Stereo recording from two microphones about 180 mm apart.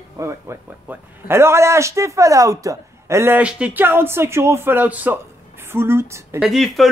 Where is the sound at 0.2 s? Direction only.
15° right (ahead or behind).